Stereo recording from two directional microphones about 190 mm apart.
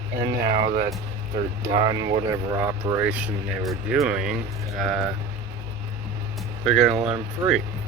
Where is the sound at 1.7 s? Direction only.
25° right (ahead or behind); by 4.4 s 5° right (ahead or behind).